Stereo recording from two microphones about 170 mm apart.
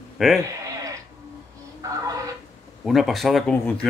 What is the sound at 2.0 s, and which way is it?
Fowl, 20° right (ahead or behind).